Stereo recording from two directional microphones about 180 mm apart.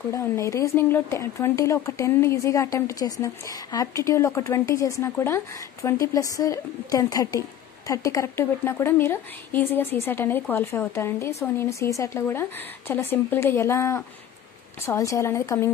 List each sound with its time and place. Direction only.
0.1 s a woman's voice: 15° left (ahead or behind)